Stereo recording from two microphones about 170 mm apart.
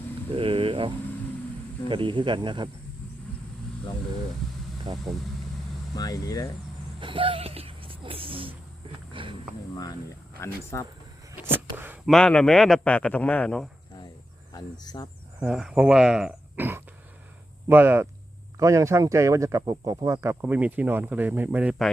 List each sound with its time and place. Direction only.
0.3 s a sound: 30° right (ahead or behind)
1.9 s speech: 30° right (ahead or behind)
4.9 s speech: 35° right (ahead or behind)
6.0 s speech: 20° left (ahead or behind)
7.0 s speech: 30° right (ahead or behind)
9.1 s a sound: 30° right (ahead or behind)
10.4 s speech: 15° left (ahead or behind)
11.3 s a sound: 10° right (ahead or behind)
12.0 s a man's voice: 5° left (ahead or behind)
14.5 s speech: 25° left (ahead or behind)
15.4 s a man's voice: 5° right (ahead or behind)